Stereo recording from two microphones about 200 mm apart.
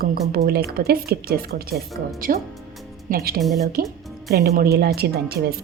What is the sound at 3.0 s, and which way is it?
A woman's voice, 50° right (ahead or behind).